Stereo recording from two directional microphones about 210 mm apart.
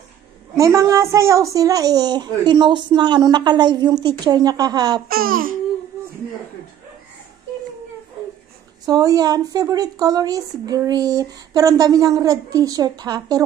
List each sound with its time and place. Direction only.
0.6 s a woman's voice: 15° right (ahead or behind)
5.0 s speech: 45° right (ahead or behind)
8.8 s speech: 15° right (ahead or behind)